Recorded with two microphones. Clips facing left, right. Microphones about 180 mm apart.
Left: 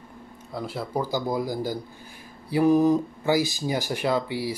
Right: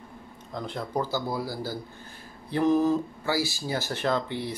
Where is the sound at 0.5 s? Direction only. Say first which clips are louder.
Left 2 dB; 10° left (ahead or behind).